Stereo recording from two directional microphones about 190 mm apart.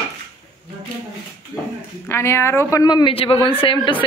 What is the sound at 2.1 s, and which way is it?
Speech, 15° left (ahead or behind).